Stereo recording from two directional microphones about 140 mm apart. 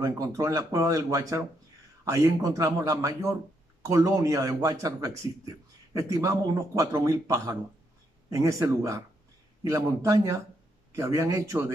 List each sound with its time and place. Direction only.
0.0 s a man's voice: 20° right (ahead or behind)